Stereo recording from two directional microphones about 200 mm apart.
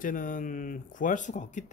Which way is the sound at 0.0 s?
40° left (ahead or behind).